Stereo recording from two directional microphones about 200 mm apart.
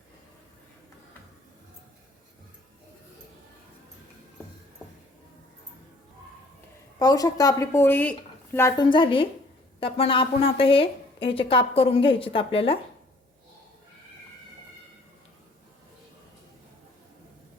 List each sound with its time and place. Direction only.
7.0 s a woman's voice: 20° left (ahead or behind)